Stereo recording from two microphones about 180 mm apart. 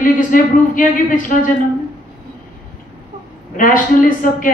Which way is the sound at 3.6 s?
50° left (ahead or behind).